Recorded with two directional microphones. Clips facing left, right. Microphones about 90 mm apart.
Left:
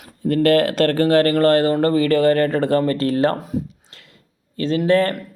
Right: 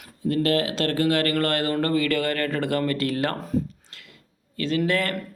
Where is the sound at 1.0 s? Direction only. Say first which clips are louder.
Left 9 dB; 35° left (ahead or behind).